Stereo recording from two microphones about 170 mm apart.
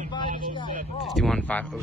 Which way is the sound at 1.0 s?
Centre (ahead or behind).